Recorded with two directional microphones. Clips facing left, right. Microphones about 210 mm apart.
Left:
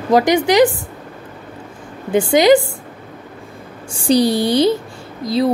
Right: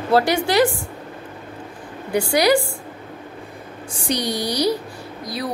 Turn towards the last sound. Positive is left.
turn(degrees=25)  # may be behind; listen again after turning